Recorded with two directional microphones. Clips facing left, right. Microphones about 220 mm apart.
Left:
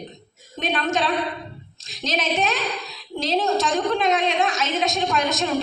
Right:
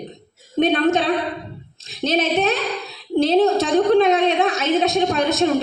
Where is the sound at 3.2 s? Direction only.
55° right (ahead or behind).